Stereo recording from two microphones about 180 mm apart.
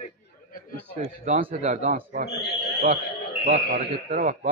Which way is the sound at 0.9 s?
40° right (ahead or behind).